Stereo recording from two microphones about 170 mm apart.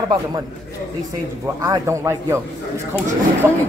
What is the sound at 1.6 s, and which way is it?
Speech, 20° right (ahead or behind).